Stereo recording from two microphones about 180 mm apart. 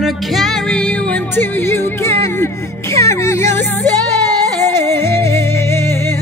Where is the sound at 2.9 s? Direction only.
15° left (ahead or behind).